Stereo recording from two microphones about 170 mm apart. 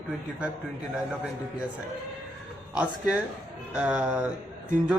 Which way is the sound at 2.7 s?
5° right (ahead or behind).